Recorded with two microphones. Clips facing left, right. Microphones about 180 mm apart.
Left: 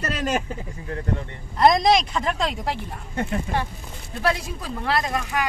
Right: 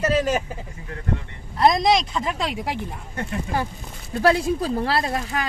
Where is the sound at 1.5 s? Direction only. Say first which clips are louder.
Left 1 dB; centre (ahead or behind).